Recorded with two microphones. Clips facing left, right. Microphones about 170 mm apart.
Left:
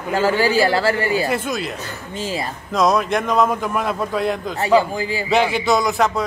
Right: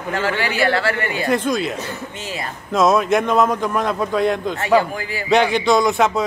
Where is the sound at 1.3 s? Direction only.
5° left (ahead or behind).